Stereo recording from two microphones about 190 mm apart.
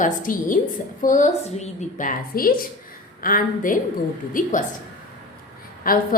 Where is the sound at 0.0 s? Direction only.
45° left (ahead or behind).